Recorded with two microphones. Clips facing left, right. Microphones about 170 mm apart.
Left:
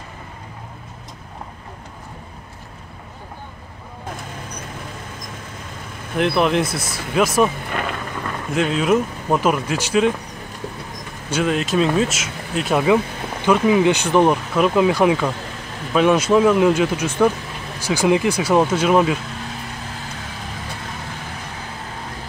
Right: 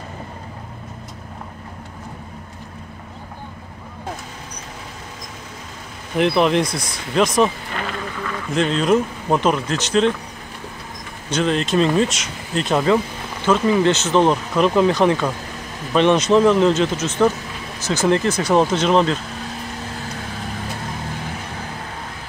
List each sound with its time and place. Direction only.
6.1 s speech: centre (ahead or behind)
7.7 s a sound: 50° left (ahead or behind)
8.5 s speech: 5° left (ahead or behind)
11.2 s speech: 5° left (ahead or behind)